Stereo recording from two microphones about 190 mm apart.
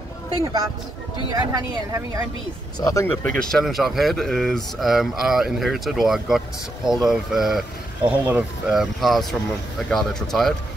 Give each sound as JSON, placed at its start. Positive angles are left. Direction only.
{"t": 1.3, "sound": "speech", "side_deg": -20}
{"t": 2.8, "sound": "speech", "side_deg": 15}
{"t": 3.3, "sound": "speech", "side_deg": 5}